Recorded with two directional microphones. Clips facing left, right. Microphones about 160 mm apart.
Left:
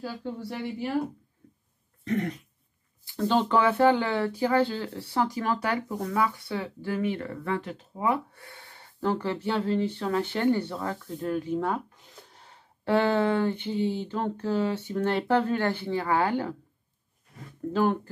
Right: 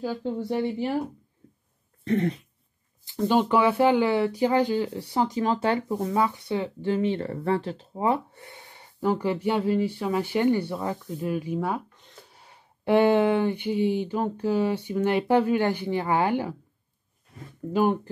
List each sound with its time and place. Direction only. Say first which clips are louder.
0.0 s a woman's voice: right 6 dB; 20° right (ahead or behind)
1.4 s a sound: right 1 dB; 25° right (ahead or behind)
2.0 s dog: right 4 dB; 30° right (ahead or behind)
3.1 s speech: right 2 dB; 15° right (ahead or behind)